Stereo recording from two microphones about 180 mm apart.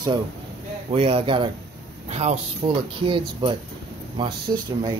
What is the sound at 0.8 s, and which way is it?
Speech, 35° right (ahead or behind).